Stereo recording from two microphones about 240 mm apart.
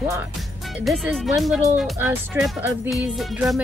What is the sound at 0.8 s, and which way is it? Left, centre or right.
Speech, centre.